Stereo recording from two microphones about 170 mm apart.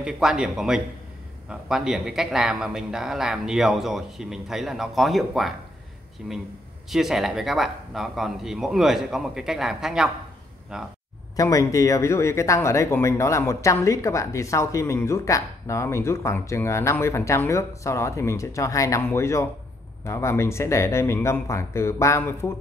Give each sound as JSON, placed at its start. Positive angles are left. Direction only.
{"t": 0.0, "sound": "a man's voice", "side_deg": -5}
{"t": 11.3, "sound": "speech", "side_deg": 20}